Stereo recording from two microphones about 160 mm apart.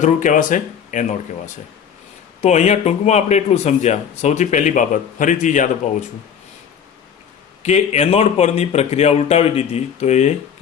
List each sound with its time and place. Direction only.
0.0 s a man's voice: 55° left (ahead or behind)
2.4 s a man's voice: 45° left (ahead or behind)
7.6 s speech: 45° left (ahead or behind)